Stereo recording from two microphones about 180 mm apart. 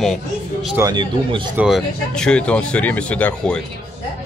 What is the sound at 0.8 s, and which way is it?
Speech, 25° right (ahead or behind).